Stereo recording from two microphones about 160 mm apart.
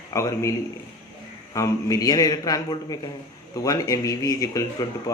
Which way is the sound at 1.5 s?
20° left (ahead or behind).